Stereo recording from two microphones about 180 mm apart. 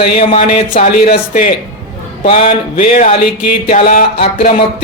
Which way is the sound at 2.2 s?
30° left (ahead or behind).